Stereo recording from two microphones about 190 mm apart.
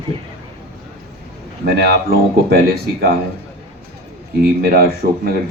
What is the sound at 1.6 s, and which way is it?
Speech, 55° right (ahead or behind).